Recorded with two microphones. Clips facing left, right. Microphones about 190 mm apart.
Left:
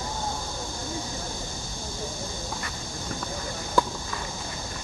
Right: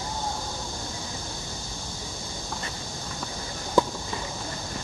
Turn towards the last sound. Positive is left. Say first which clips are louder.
# right 2 dB
turn(degrees=-20)  # may be behind; listen again after turning